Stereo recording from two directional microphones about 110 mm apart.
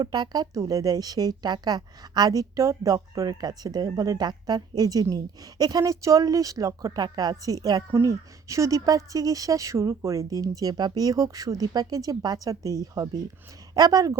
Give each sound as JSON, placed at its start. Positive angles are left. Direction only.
{"t": 0.0, "sound": "speech", "side_deg": -40}